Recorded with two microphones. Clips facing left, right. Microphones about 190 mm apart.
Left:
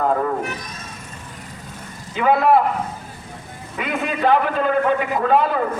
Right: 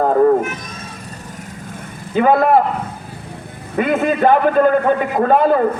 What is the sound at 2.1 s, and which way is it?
Speech, 50° right (ahead or behind).